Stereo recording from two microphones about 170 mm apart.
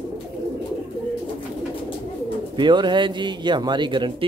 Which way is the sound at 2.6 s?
25° right (ahead or behind).